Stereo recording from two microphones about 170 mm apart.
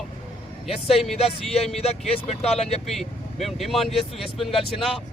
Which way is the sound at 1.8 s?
35° left (ahead or behind).